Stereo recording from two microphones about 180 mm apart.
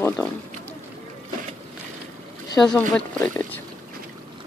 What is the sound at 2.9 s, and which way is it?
Speech, 5° left (ahead or behind).